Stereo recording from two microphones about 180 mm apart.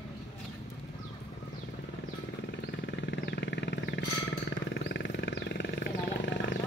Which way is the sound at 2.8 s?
70° left (ahead or behind).